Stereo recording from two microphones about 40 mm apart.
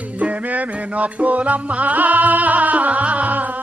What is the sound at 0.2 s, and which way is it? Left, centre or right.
Music, right.